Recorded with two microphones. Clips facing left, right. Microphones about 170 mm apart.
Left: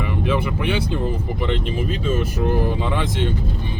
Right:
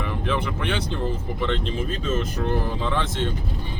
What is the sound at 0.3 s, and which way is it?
Speech, 10° left (ahead or behind).